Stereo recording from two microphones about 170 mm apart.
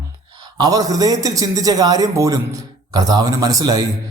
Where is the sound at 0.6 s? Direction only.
20° right (ahead or behind).